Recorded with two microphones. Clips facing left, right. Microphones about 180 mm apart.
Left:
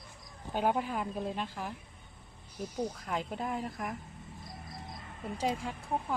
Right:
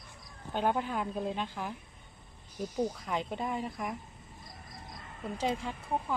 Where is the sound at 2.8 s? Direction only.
Centre (ahead or behind).